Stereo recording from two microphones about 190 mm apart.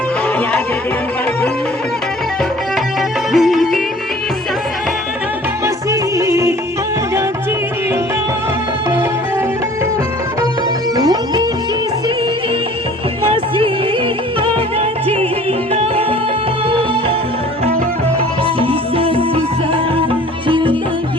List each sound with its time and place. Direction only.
3.3 s music: centre (ahead or behind)
5.6 s music: 15° right (ahead or behind)
10.9 s music: 20° right (ahead or behind)
15.7 s music: 30° right (ahead or behind)
18.6 s music: 30° right (ahead or behind)
20.5 s music: 25° right (ahead or behind)